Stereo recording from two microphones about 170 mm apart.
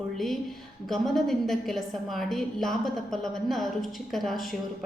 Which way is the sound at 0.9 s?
Centre (ahead or behind).